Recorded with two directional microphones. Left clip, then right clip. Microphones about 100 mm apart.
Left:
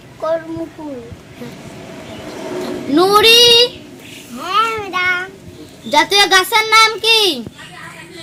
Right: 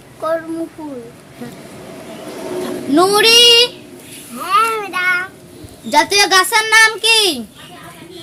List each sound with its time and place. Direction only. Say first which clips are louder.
0.2 s speech: even; 15° left (ahead or behind)
2.3 s a sound: right 1 dB; 5° right (ahead or behind)
2.9 s a child's voice: left 1 dB; 35° right (ahead or behind)
4.4 s child singing: right 2 dB; 15° left (ahead or behind)
5.9 s a child's voice: left 1 dB; 35° right (ahead or behind)